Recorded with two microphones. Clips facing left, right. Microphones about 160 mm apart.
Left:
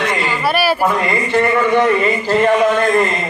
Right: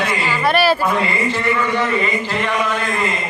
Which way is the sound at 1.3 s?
60° left (ahead or behind).